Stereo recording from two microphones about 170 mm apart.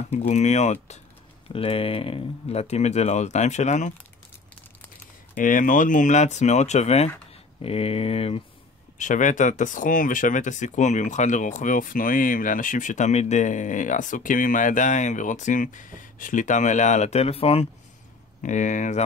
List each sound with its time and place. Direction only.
0.3 s speech: 40° left (ahead or behind)
5.3 s speech: 50° left (ahead or behind); by 8.5 s 35° left (ahead or behind)
8.9 s speech: 50° left (ahead or behind)
18.4 s speech: 45° left (ahead or behind)